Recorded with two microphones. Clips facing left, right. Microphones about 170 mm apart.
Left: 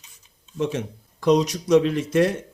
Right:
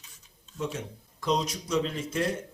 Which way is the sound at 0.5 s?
85° left.